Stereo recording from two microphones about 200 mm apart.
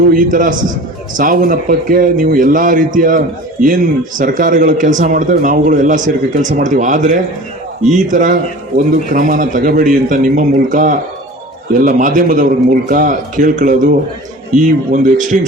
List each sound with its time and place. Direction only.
0.1 s a man's voice: 45° right (ahead or behind)